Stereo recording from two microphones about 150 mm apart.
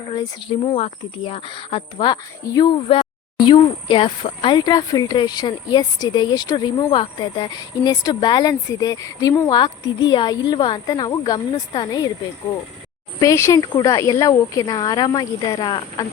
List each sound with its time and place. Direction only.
0.1 s speech: 35° left (ahead or behind)
2.8 s speech: 40° left (ahead or behind)
13.1 s speech: 20° left (ahead or behind)